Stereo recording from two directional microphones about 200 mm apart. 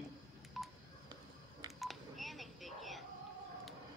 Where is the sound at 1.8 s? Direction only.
Centre (ahead or behind).